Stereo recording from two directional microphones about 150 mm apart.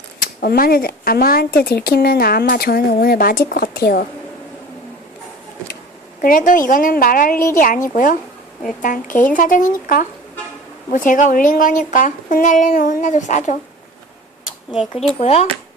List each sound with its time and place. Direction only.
0.4 s speech: 85° left
3.5 s speech: 85° left
6.2 s a woman's voice: 65° left (ahead or behind)
15.2 s speech: 45° left (ahead or behind)